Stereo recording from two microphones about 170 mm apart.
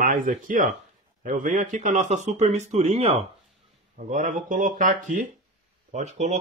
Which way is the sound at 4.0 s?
50° right (ahead or behind).